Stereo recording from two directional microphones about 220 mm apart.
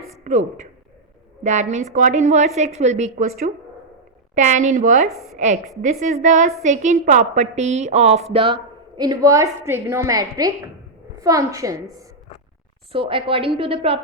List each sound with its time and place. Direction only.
0.3 s a woman's voice: 35° right (ahead or behind)